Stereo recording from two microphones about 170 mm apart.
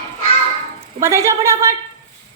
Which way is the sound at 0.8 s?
15° right (ahead or behind).